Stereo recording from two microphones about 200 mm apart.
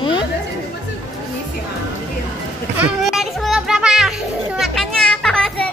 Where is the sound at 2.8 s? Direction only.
Centre (ahead or behind).